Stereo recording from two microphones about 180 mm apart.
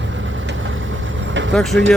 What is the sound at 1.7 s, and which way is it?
Speech, 75° right (ahead or behind).